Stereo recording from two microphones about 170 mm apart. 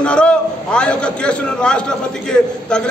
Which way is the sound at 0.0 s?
5° left (ahead or behind).